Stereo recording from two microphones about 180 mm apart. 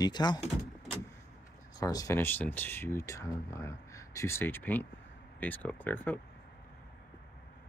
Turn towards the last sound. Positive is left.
turn(degrees=10)  # may be behind; listen again after turning